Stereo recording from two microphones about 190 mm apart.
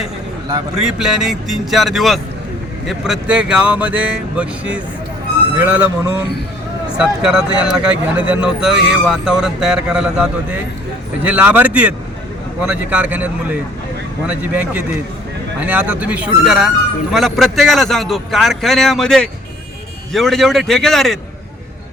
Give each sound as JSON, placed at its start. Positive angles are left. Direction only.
{"t": 0.8, "sound": "speech", "side_deg": 0}